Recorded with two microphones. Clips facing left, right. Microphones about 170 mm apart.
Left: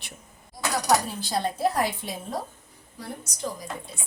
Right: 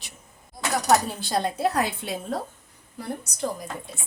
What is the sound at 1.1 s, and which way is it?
Speech, 65° right (ahead or behind).